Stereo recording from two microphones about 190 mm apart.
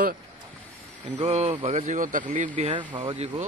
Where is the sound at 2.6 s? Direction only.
30° right (ahead or behind).